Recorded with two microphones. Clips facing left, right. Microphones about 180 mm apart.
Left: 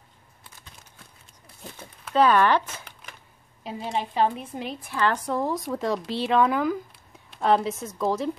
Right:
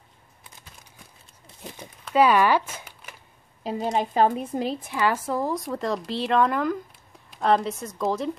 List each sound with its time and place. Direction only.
1.8 s speech: 15° right (ahead or behind)
2.1 s a sound: 10° right (ahead or behind)
3.6 s a woman's voice: 40° right (ahead or behind)
4.9 s speech: 10° right (ahead or behind)